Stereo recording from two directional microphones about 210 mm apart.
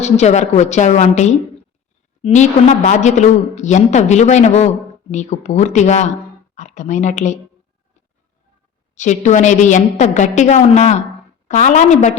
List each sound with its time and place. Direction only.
0.0 s a woman's voice: 30° left (ahead or behind)
9.0 s a woman's voice: 35° left (ahead or behind)